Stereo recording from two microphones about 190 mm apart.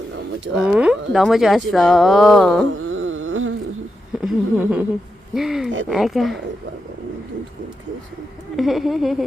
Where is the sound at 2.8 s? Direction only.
90° right.